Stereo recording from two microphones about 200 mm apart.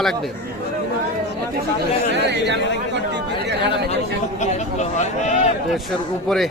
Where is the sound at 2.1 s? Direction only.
60° right (ahead or behind).